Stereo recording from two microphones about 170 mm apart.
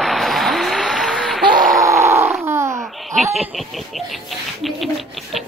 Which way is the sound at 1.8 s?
15° right (ahead or behind).